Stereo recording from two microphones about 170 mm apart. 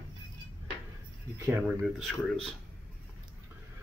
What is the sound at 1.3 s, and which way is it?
Speech, 10° right (ahead or behind).